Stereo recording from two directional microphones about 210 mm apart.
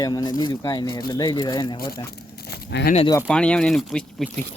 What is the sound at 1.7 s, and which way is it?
Speech, 45° left (ahead or behind).